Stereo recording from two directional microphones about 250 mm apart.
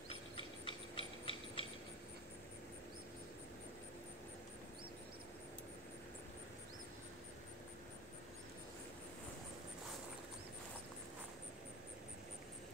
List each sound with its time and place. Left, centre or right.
0.1 s mechanisms: left